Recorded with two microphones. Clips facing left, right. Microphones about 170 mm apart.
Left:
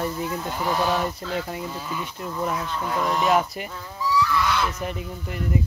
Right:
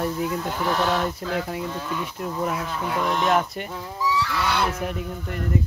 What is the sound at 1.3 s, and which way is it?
Speech, centre (ahead or behind).